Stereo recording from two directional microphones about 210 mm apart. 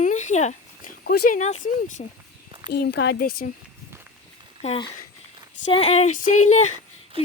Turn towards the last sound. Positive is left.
turn(degrees=-25)  # may be behind; listen again after turning